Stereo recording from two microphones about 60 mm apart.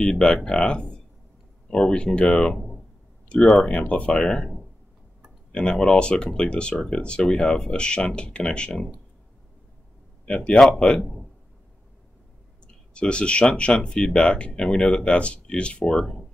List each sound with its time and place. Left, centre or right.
0.0 s speech: centre
3.3 s speech: centre
3.7 s speech: left
4.1 s speech: centre
5.5 s speech: centre
10.2 s speech: centre
12.9 s speech: centre